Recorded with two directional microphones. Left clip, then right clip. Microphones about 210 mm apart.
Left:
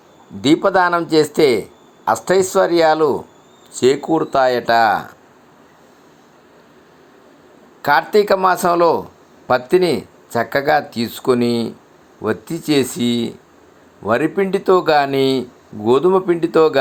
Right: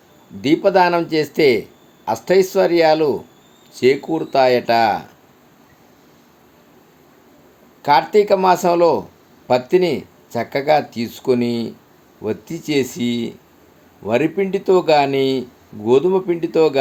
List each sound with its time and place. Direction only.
0.4 s speech: 5° left (ahead or behind)
7.8 s speech: 5° left (ahead or behind)